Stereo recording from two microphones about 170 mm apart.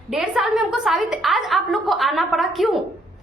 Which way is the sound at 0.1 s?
5° right (ahead or behind).